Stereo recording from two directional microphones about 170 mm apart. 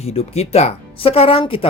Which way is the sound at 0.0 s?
35° left (ahead or behind).